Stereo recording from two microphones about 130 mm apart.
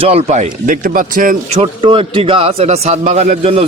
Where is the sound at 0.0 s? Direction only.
50° right (ahead or behind); by 1.4 s 90° right.